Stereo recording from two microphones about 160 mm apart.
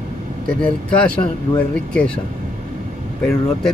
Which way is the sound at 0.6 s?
5° left (ahead or behind).